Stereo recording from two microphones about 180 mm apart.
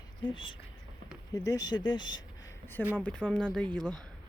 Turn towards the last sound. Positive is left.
turn(degrees=5)  # may be behind; listen again after turning